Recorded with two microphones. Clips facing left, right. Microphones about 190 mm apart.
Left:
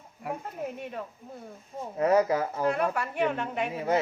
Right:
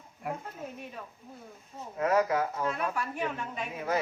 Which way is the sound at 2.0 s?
30° left (ahead or behind).